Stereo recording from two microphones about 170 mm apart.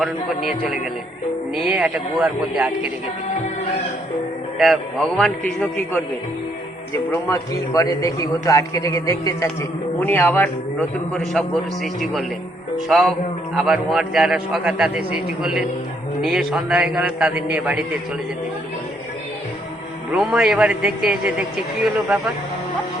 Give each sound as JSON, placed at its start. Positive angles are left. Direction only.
{"t": 0.0, "sound": "a man's voice", "side_deg": -5}
{"t": 4.5, "sound": "a man's voice", "side_deg": 0}
{"t": 6.9, "sound": "a man's voice", "side_deg": 15}
{"t": 20.1, "sound": "a man's voice", "side_deg": -5}